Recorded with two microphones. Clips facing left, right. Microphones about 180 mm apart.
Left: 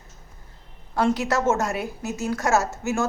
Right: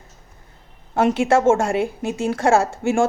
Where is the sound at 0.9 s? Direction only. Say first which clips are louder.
Right 5 dB; 25° right (ahead or behind).